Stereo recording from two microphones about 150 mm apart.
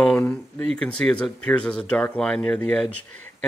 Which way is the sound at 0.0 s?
5° left (ahead or behind).